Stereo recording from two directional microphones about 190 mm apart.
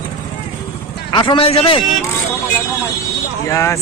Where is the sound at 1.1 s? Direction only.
25° left (ahead or behind).